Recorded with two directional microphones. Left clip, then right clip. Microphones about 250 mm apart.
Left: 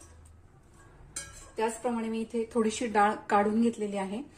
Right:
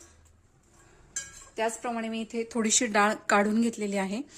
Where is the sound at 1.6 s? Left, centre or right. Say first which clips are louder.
Even; right.